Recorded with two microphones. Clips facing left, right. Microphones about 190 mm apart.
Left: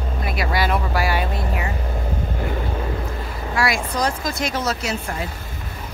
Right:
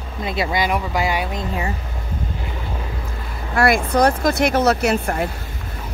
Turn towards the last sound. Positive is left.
turn(degrees=-60)  # may be behind; listen again after turning